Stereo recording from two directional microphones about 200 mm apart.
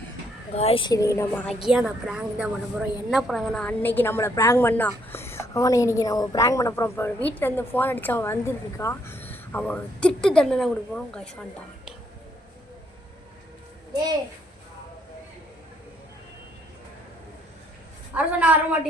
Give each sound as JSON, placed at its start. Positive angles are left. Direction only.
{"t": 0.5, "sound": "a woman's voice", "side_deg": 30}
{"t": 1.6, "sound": "a woman's voice", "side_deg": 0}
{"t": 18.1, "sound": "a woman's voice", "side_deg": -5}